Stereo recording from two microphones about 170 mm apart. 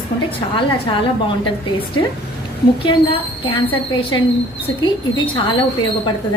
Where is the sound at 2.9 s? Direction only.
30° left (ahead or behind).